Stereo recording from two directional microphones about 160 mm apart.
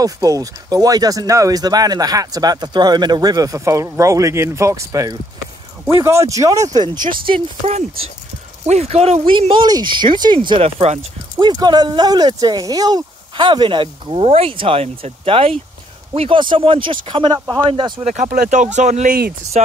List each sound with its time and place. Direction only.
0.0 s speech: 20° right (ahead or behind)
7.2 s speech: 35° right (ahead or behind)
11.3 s speech: 25° right (ahead or behind)
18.0 s speech: 50° right (ahead or behind)